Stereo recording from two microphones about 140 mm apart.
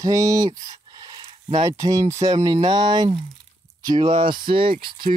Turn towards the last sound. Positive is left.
turn(degrees=-35)  # may be behind; listen again after turning